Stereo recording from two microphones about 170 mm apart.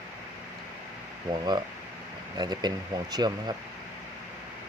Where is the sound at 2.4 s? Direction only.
25° right (ahead or behind).